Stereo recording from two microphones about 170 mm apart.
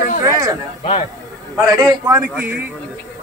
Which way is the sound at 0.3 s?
20° right (ahead or behind).